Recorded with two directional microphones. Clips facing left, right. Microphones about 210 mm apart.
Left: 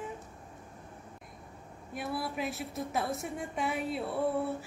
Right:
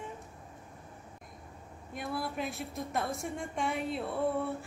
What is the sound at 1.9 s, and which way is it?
A woman's voice, 5° left (ahead or behind).